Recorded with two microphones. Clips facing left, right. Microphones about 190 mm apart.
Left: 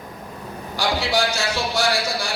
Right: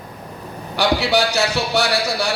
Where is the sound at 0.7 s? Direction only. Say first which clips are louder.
Right 4 dB; 65° right (ahead or behind).